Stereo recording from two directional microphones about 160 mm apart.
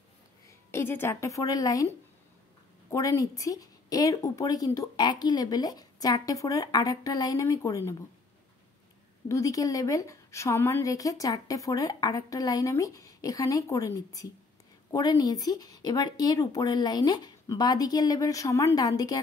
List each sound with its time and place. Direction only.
0.5 s speech: 15° left (ahead or behind)
2.9 s a woman's voice: 20° left (ahead or behind)
9.3 s a woman's voice: 20° left (ahead or behind)